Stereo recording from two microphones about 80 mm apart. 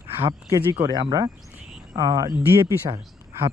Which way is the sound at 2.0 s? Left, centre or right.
Right.